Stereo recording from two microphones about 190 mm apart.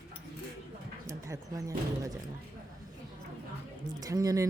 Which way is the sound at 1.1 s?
15° right (ahead or behind).